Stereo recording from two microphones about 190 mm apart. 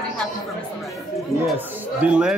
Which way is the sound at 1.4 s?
5° right (ahead or behind).